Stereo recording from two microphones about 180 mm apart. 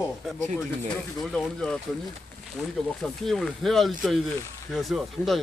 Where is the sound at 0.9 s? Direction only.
5° left (ahead or behind).